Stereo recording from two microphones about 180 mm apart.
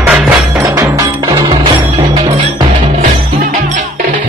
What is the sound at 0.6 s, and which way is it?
Music, 20° right (ahead or behind).